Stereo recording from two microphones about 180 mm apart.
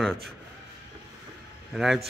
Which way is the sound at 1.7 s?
Centre (ahead or behind).